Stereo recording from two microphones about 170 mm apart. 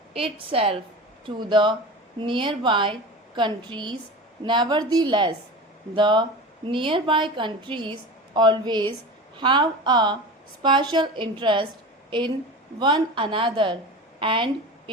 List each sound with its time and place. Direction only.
0.1 s a woman's voice: 35° right (ahead or behind)
12.8 s a woman's voice: 30° right (ahead or behind)